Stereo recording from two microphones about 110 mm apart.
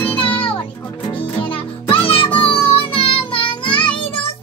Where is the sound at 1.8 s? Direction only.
55° left (ahead or behind).